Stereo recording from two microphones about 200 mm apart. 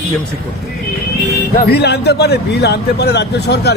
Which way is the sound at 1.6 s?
55° left (ahead or behind).